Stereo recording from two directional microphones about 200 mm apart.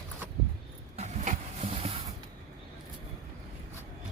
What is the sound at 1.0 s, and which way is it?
Printer, 35° right (ahead or behind).